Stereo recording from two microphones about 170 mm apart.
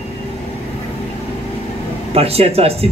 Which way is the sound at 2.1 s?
35° right (ahead or behind).